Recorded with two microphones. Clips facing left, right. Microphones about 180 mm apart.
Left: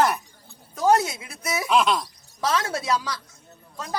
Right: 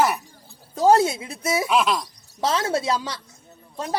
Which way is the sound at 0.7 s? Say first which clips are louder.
Right 3 dB; 30° right (ahead or behind).